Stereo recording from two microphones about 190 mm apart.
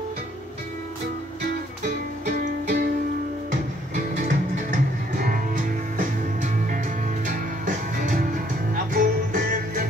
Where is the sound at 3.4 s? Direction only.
40° right (ahead or behind).